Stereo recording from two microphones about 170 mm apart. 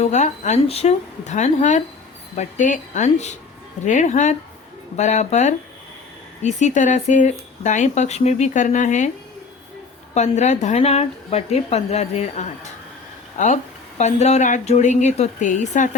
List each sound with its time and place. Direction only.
0.0 s speech: 45° left (ahead or behind)
10.2 s speech: 45° left (ahead or behind)